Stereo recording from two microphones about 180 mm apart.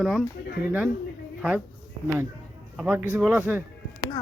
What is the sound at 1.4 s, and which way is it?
Speech, 5° right (ahead or behind).